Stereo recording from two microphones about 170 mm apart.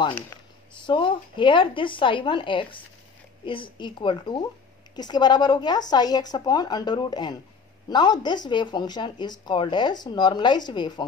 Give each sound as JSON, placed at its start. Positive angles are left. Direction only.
{"t": 0.8, "sound": "speech", "side_deg": 30}